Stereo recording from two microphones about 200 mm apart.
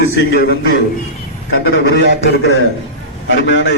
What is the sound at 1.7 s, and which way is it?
Speech, 75° left (ahead or behind).